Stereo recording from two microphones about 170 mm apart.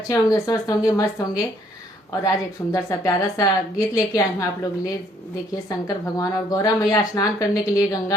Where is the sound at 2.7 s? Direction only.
20° left (ahead or behind).